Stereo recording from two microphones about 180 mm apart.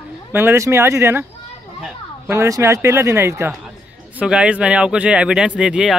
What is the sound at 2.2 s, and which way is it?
Speech, 15° right (ahead or behind).